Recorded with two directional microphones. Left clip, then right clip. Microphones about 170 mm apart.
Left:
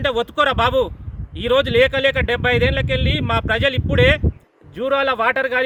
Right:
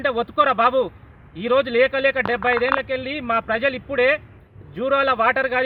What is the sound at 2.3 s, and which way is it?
Speech, 10° left (ahead or behind).